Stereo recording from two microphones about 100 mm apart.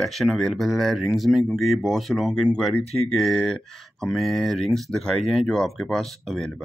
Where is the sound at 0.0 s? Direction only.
5° left (ahead or behind).